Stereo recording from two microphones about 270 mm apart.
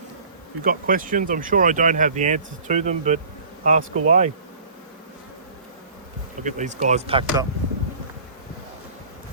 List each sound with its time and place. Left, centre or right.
0.6 s speech: right
6.4 s speech: right